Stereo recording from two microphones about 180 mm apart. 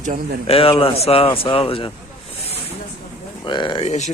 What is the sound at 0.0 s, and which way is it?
Speech, 45° right (ahead or behind).